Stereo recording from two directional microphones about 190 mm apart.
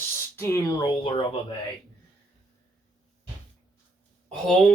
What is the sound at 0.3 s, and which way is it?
Speech, 15° left (ahead or behind).